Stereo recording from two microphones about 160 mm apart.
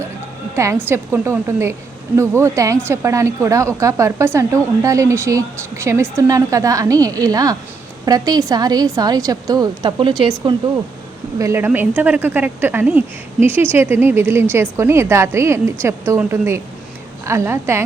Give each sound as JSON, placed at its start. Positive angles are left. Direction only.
{"t": 0.5, "sound": "a woman's voice", "side_deg": -15}
{"t": 11.3, "sound": "speech", "side_deg": -15}